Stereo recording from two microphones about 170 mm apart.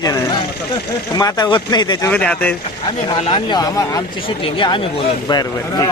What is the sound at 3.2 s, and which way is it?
A man's voice, 25° left (ahead or behind).